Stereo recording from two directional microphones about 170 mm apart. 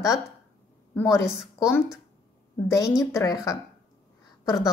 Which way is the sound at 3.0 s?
20° left (ahead or behind).